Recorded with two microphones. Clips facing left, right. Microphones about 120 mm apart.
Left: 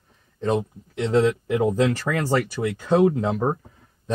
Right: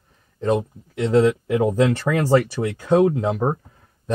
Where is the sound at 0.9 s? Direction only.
Centre (ahead or behind).